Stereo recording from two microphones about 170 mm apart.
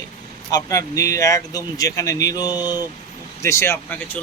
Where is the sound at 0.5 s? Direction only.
20° left (ahead or behind).